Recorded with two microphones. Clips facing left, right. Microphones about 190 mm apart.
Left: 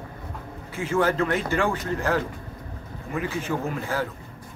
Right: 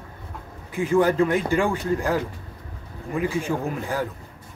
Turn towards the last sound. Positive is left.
turn(degrees=-15)  # may be behind; listen again after turning